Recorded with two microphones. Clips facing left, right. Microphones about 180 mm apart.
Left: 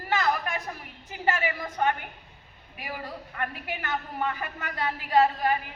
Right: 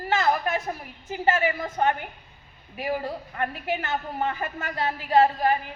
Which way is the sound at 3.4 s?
25° right (ahead or behind).